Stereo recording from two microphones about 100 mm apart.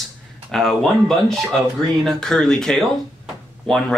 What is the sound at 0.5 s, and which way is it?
Speech, 5° left (ahead or behind).